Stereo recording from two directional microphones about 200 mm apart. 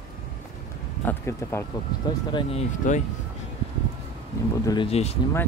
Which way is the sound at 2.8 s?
40° left (ahead or behind).